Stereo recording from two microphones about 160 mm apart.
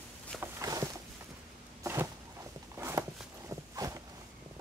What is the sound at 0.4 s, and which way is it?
Walk, 20° right (ahead or behind).